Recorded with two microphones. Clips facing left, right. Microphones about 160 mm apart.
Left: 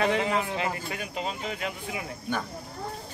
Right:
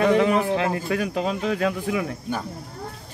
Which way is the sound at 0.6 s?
75° right (ahead or behind).